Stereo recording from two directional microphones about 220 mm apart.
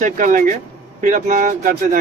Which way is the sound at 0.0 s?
35° right (ahead or behind).